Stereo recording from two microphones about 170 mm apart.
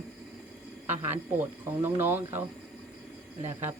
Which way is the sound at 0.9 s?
10° right (ahead or behind).